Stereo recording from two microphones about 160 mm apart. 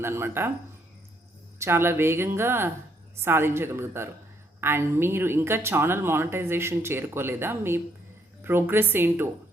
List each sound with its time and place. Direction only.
0.0 s a woman's voice: 15° right (ahead or behind)
1.5 s a woman's voice: 15° right (ahead or behind)